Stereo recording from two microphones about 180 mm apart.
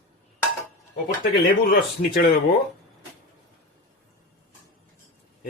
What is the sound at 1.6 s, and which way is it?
Speech, 55° left (ahead or behind).